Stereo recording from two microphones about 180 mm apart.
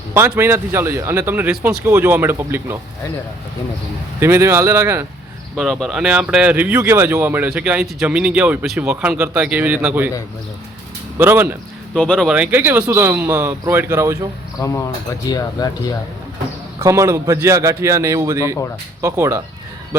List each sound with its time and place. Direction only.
0.1 s speech: 15° right (ahead or behind)
4.2 s speech: 15° right (ahead or behind)
5.5 s speech: centre (ahead or behind)
11.2 s speech: 10° right (ahead or behind)
11.9 s speech: 5° left (ahead or behind)
12.3 s speech: 10° right (ahead or behind)
14.6 s speech: 15° left (ahead or behind)
15.3 s chink: 20° left (ahead or behind)
16.8 s speech: 15° right (ahead or behind)